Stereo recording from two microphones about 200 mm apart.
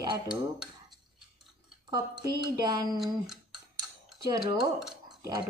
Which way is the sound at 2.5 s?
20° right (ahead or behind).